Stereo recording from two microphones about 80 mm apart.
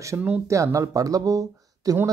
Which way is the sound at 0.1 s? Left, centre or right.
Right.